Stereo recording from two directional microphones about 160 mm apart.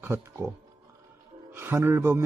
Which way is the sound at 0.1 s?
15° right (ahead or behind).